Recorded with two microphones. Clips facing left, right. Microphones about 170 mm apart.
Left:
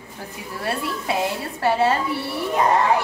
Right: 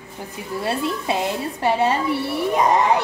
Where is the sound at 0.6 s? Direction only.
25° right (ahead or behind).